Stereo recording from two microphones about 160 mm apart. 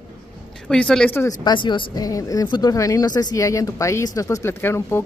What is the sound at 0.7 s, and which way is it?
Speech, 5° left (ahead or behind).